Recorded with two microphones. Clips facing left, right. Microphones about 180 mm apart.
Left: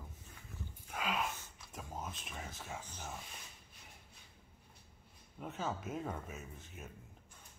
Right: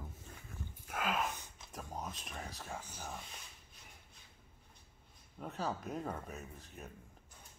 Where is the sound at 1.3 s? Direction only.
15° right (ahead or behind).